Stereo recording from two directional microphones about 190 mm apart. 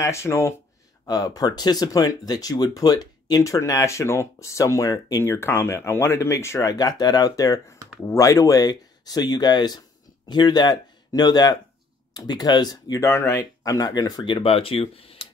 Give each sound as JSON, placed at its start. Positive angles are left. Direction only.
{"t": 0.0, "sound": "speech", "side_deg": 15}